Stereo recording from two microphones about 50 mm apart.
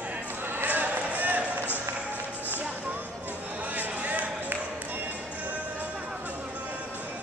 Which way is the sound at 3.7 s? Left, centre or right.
Right.